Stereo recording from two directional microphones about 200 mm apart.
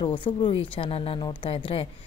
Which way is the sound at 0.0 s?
25° left (ahead or behind).